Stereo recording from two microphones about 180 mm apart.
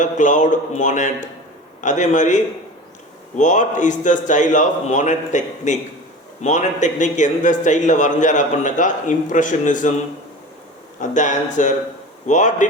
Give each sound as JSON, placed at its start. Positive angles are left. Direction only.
{"t": 0.0, "sound": "a man's voice", "side_deg": 45}
{"t": 11.0, "sound": "a man's voice", "side_deg": 45}